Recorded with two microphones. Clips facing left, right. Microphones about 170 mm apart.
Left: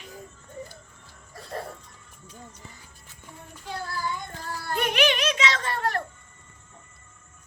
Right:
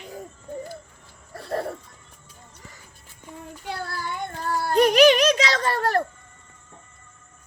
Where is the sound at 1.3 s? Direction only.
65° right (ahead or behind).